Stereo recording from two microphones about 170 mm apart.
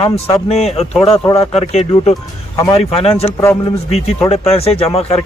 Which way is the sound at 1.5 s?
35° left (ahead or behind).